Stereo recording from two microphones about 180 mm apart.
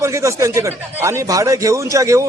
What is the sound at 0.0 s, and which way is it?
A man's voice, 15° right (ahead or behind).